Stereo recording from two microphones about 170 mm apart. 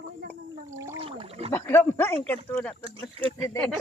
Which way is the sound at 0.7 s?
15° right (ahead or behind).